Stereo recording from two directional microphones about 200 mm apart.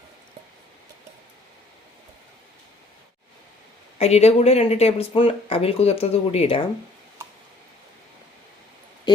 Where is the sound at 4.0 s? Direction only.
30° left (ahead or behind).